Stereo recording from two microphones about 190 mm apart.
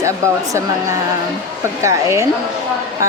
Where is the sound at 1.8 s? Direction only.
15° right (ahead or behind).